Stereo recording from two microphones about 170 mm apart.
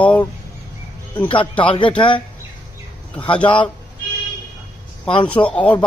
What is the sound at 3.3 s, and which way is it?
Speech, 30° left (ahead or behind).